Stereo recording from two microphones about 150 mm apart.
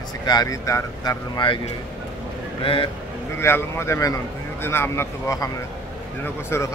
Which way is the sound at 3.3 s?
15° left (ahead or behind).